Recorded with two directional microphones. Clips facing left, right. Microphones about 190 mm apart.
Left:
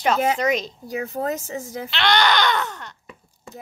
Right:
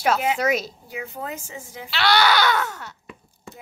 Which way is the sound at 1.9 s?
5° right (ahead or behind).